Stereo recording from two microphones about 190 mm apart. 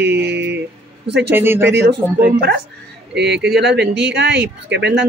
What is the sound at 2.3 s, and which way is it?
Speech, 55° right (ahead or behind).